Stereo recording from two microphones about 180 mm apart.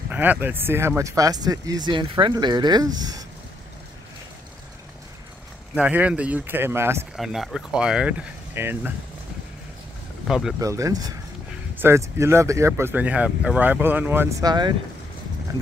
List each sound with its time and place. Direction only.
0.1 s speech: 10° right (ahead or behind)
5.8 s speech: 10° right (ahead or behind)
7.2 s speech: centre (ahead or behind)
10.2 s speech: centre (ahead or behind)
10.6 s speech: 20° right (ahead or behind)